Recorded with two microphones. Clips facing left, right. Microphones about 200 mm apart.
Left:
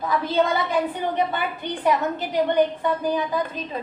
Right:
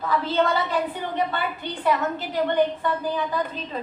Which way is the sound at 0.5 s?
15° left (ahead or behind).